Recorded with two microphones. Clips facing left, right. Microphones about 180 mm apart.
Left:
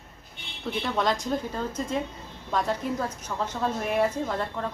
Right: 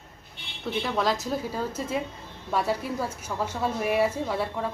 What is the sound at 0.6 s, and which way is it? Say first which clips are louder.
A woman's voice: even; centre (ahead or behind).